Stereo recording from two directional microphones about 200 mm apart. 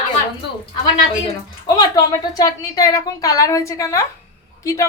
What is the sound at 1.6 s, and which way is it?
A woman's voice, 20° left (ahead or behind).